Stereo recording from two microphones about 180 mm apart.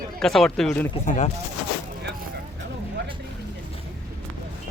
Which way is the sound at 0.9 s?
40° left (ahead or behind).